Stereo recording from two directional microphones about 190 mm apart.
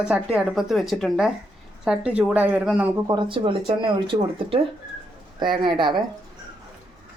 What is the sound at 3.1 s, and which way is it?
Speech, 25° right (ahead or behind).